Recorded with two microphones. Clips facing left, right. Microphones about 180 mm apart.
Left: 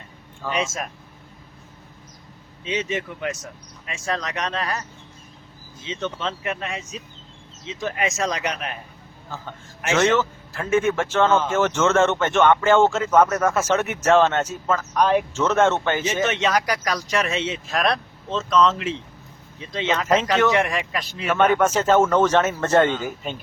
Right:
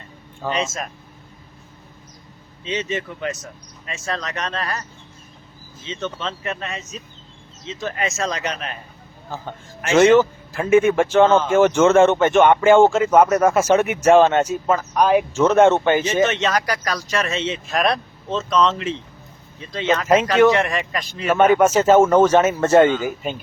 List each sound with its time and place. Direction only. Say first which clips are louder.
0.5 s speech: right 1 dB; 10° left (ahead or behind)
2.6 s speech: right 1 dB; 10° left (ahead or behind)
5.8 s speech: even; 15° left (ahead or behind)
9.3 s speech: right 4 dB; 15° right (ahead or behind)
16.2 s speech: right 2 dB; 10° left (ahead or behind)
19.5 s speech: right 3 dB; 20° left (ahead or behind)
21.2 s speech: right 4 dB; 10° right (ahead or behind)